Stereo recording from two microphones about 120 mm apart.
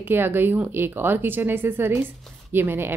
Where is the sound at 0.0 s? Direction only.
15° right (ahead or behind).